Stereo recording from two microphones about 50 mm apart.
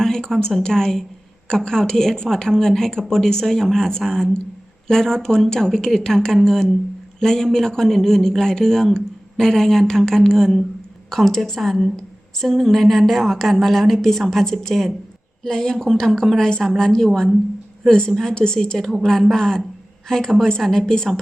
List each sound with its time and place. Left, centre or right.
0.0 s a woman's voice: centre